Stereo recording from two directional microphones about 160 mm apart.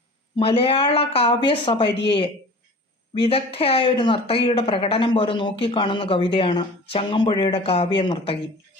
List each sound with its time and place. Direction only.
0.3 s speech: 35° left (ahead or behind)
3.2 s speech: 35° left (ahead or behind)